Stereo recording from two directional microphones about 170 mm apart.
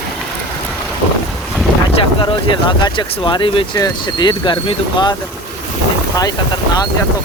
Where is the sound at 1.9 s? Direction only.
30° left (ahead or behind).